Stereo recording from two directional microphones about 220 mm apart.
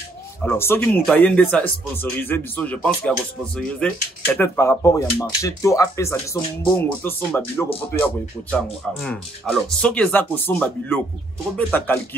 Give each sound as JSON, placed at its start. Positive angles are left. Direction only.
{"t": 0.4, "sound": "speech", "side_deg": 10}